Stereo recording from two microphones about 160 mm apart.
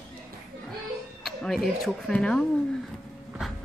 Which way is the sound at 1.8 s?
5° left (ahead or behind).